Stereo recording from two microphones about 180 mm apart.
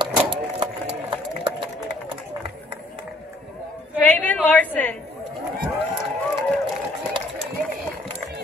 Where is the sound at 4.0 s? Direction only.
10° left (ahead or behind).